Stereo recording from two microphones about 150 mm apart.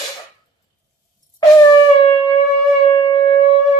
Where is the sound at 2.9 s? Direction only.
30° left (ahead or behind).